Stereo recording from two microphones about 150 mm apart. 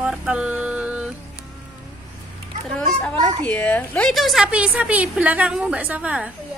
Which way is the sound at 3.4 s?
10° left (ahead or behind).